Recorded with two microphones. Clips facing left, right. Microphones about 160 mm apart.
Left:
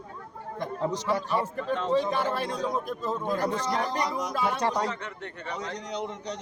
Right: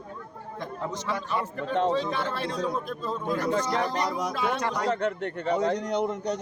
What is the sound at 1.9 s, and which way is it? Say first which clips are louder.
Speech: left 3 dB; 10° left (ahead or behind).